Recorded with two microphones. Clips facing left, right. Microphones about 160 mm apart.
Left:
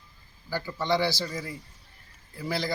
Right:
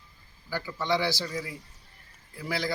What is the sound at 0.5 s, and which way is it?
A man's voice, centre (ahead or behind).